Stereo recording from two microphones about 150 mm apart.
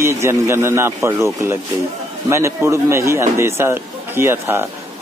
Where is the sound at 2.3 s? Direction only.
20° right (ahead or behind).